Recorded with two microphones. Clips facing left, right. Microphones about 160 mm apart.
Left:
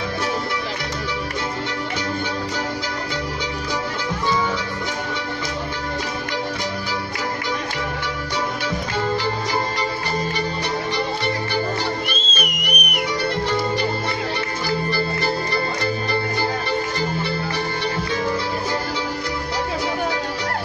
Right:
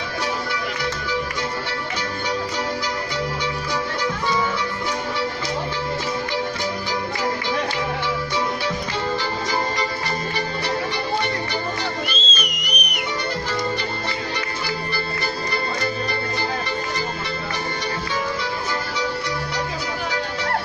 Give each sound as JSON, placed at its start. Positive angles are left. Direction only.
{"t": 12.1, "sound": "music", "side_deg": 55}